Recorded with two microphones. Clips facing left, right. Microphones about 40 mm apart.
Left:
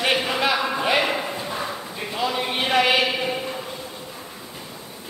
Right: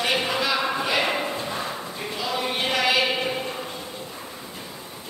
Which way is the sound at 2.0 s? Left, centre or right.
Left.